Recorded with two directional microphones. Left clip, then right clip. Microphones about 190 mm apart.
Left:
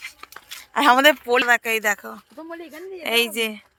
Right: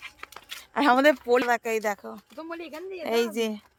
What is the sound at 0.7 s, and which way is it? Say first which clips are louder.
A woman's voice: left 5 dB; centre (ahead or behind).